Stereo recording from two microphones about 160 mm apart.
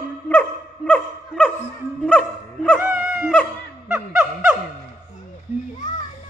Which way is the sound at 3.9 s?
5° right (ahead or behind).